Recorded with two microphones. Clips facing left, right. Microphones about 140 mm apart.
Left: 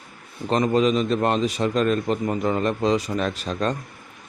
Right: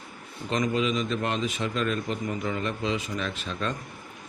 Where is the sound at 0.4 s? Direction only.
35° left (ahead or behind).